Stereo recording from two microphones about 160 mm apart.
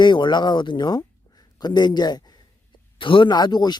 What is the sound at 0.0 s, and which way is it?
Speech, 30° left (ahead or behind).